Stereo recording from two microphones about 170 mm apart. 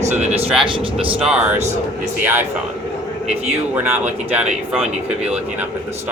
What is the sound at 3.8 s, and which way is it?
Speech, 10° right (ahead or behind).